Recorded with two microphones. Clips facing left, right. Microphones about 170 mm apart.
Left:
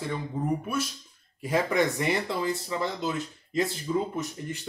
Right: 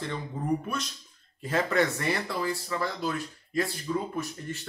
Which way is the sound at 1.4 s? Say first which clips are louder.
Left 1 dB; 15° left (ahead or behind).